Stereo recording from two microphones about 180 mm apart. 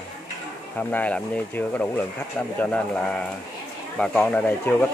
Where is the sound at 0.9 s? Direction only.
10° left (ahead or behind).